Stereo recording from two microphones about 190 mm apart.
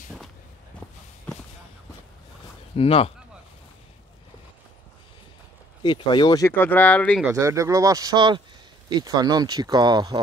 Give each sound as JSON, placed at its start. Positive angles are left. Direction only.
{"t": 2.7, "sound": "speech", "side_deg": 30}
{"t": 5.8, "sound": "speech", "side_deg": 25}
{"t": 7.2, "sound": "speech", "side_deg": -15}